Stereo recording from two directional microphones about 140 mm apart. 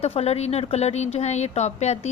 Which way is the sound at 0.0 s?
45° left (ahead or behind).